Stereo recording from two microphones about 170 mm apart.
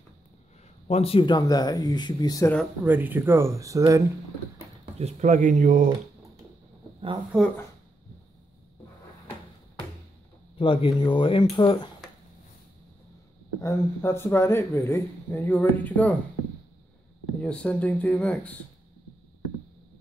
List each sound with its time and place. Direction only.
0.8 s speech: 35° left (ahead or behind); by 2.5 s 20° left (ahead or behind)
2.8 s speech: 10° right (ahead or behind)
4.9 s speech: 40° right (ahead or behind)
7.3 s speech: 5° right (ahead or behind)
10.6 s speech: 30° left (ahead or behind)
13.6 s a man's voice: 15° left (ahead or behind)
17.4 s a man's voice: 5° left (ahead or behind)